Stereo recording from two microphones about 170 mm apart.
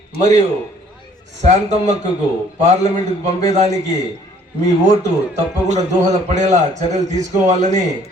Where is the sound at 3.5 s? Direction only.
40° right (ahead or behind).